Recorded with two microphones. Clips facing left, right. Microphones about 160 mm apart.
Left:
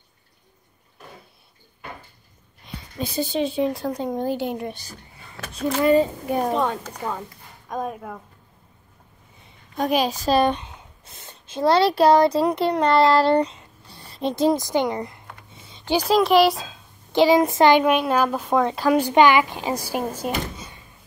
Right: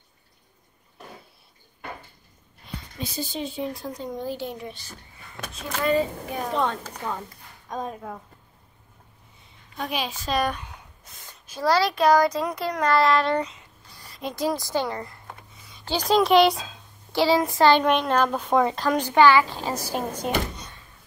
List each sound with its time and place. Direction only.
3.0 s a woman's voice: 60° left (ahead or behind)
5.9 s a child's voice: 35° left (ahead or behind)
6.5 s speech: 5° left (ahead or behind)
9.8 s a child's voice: 40° left (ahead or behind)
10.4 s a sound: 25° left (ahead or behind)
16.1 s speech: centre (ahead or behind)
17.1 s speech: 20° left (ahead or behind); by 18.8 s centre (ahead or behind)
18.8 s speech: 10° left (ahead or behind)